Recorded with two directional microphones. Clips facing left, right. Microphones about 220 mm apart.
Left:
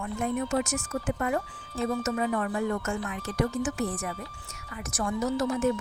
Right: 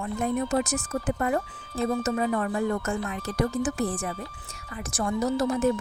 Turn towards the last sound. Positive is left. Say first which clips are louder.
# right 2 dB
turn(degrees=-35)  # may be behind; listen again after turning